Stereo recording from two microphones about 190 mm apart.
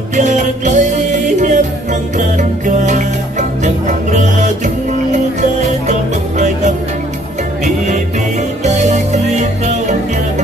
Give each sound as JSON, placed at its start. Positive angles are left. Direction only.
{"t": 0.1, "sound": "music", "side_deg": -40}
{"t": 7.6, "sound": "music", "side_deg": -40}